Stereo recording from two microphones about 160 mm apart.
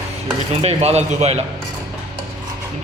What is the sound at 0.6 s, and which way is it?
Speech, 40° right (ahead or behind).